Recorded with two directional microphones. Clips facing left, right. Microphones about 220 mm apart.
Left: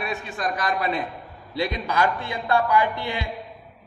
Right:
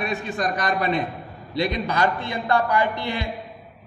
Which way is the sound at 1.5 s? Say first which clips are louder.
Right 1 dB; 10° left (ahead or behind).